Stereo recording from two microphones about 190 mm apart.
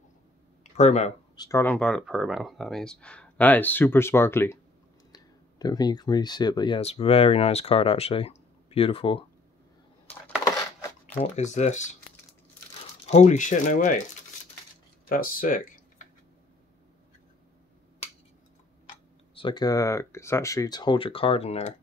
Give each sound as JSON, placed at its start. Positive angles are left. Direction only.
{"t": 0.7, "sound": "speech", "side_deg": 35}
{"t": 1.3, "sound": "speech", "side_deg": 20}
{"t": 1.6, "sound": "speech", "side_deg": 5}
{"t": 10.4, "sound": "crushing", "side_deg": 15}
{"t": 11.1, "sound": "speech", "side_deg": 35}
{"t": 13.0, "sound": "speech", "side_deg": 35}
{"t": 15.0, "sound": "speech", "side_deg": 50}
{"t": 19.3, "sound": "speech", "side_deg": 25}